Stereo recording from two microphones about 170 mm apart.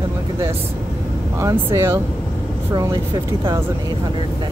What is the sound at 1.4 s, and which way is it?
Speech, 15° right (ahead or behind).